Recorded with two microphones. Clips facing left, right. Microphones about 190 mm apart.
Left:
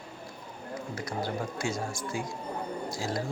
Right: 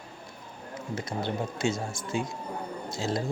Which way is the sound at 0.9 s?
25° right (ahead or behind).